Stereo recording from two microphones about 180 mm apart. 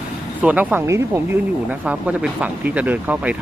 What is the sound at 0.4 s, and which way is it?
Speech, 10° right (ahead or behind).